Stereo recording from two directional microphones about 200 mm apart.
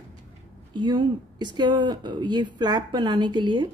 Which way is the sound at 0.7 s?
25° right (ahead or behind).